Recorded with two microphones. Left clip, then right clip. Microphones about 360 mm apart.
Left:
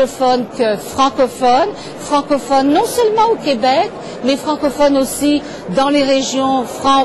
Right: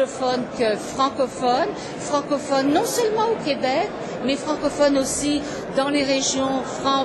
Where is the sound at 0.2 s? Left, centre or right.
Left.